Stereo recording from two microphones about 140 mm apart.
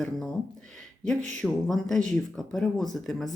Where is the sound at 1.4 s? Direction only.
5° left (ahead or behind).